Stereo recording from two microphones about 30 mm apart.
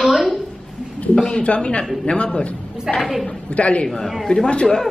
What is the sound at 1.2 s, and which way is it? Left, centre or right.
Speech, left.